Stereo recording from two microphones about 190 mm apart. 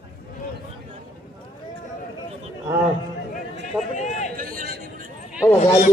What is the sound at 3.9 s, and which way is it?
Run, 40° left (ahead or behind).